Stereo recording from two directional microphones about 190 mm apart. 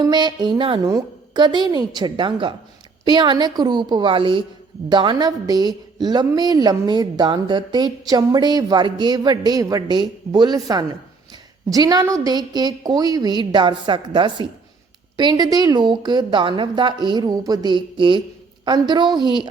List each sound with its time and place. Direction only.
0.0 s a woman's voice: 20° right (ahead or behind)